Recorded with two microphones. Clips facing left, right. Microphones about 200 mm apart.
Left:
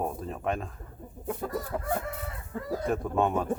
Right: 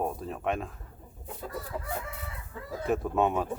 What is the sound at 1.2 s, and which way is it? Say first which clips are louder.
Chicken: left 6 dB; 50° left (ahead or behind).